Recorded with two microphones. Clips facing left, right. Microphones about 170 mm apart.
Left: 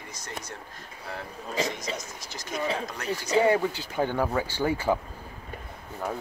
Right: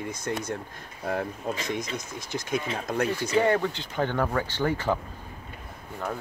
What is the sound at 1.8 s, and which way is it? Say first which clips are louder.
Speech: right 2 dB; 55° right (ahead or behind).